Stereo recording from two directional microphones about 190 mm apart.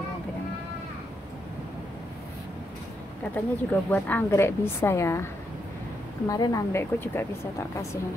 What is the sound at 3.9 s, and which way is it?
A woman's voice, 10° left (ahead or behind).